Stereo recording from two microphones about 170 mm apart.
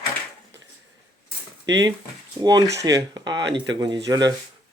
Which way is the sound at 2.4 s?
25° right (ahead or behind).